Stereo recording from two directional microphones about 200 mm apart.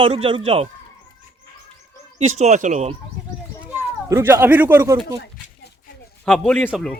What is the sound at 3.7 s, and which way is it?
Speech, 10° right (ahead or behind).